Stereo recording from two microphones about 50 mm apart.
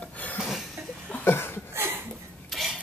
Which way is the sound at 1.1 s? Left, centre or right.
Left.